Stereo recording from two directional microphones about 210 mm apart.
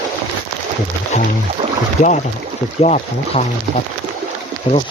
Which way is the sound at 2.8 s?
35° left (ahead or behind).